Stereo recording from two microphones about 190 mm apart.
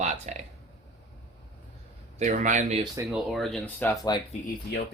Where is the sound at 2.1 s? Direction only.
40° right (ahead or behind).